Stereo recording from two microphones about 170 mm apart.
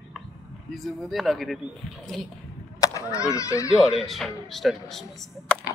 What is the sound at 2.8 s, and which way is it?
Speech, 20° left (ahead or behind).